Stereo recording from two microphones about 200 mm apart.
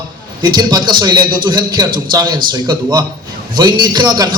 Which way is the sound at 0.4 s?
20° right (ahead or behind).